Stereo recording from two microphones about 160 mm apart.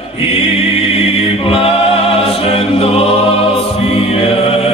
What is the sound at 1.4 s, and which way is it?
A capella, 35° left (ahead or behind).